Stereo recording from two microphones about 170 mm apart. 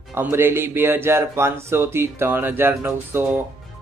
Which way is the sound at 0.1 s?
15° right (ahead or behind).